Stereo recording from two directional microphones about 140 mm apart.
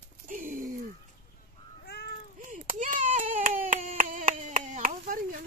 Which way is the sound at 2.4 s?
65° right (ahead or behind).